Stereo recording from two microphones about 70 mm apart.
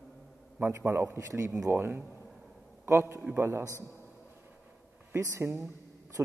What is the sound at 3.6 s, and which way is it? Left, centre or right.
Speech, right.